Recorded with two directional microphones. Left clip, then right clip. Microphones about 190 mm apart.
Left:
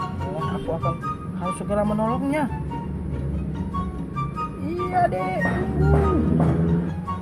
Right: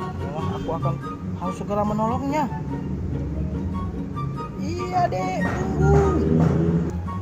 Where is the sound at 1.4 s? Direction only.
5° left (ahead or behind).